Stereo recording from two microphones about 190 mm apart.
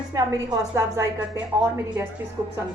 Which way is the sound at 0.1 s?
20° right (ahead or behind).